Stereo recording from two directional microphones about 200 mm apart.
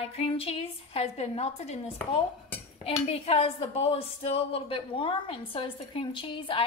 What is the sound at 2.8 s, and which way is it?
A woman's voice, 30° left (ahead or behind).